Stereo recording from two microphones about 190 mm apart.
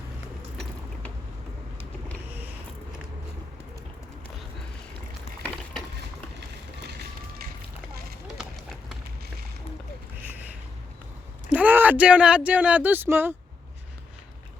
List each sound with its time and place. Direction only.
0.5 s vehicle: centre (ahead or behind)
6.8 s run: 55° right (ahead or behind)
11.4 s speech: 10° right (ahead or behind)